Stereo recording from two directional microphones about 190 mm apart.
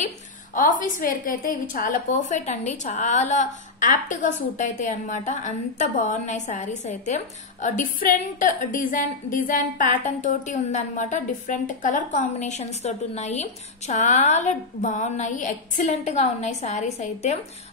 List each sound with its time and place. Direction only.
0.6 s a woman's voice: 45° left (ahead or behind)